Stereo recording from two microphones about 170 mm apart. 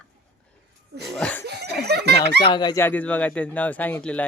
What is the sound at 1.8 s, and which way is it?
Speech, 75° right (ahead or behind).